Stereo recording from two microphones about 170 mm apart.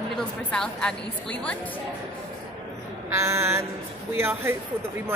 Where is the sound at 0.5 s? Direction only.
5° left (ahead or behind).